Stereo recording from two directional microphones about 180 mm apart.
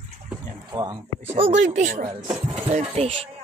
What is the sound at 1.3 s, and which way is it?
Speech, 35° right (ahead or behind).